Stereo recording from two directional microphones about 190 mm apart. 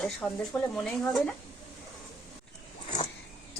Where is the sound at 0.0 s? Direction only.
5° left (ahead or behind).